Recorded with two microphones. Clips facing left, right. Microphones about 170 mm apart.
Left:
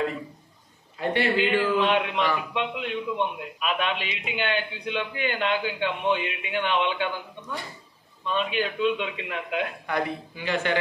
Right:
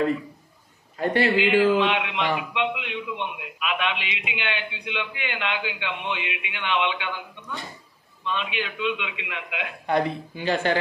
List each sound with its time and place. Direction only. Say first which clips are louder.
1.4 s a man's voice: right 5 dB; 40° left (ahead or behind)
8.3 s a man's voice: left 3 dB; 40° left (ahead or behind)
9.8 s speech: right 4 dB; 30° right (ahead or behind)